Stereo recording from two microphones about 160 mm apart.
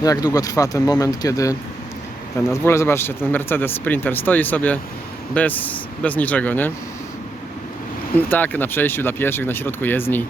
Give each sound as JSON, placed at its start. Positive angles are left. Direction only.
{"t": 0.0, "sound": "speech", "side_deg": 25}
{"t": 8.1, "sound": "speech", "side_deg": 10}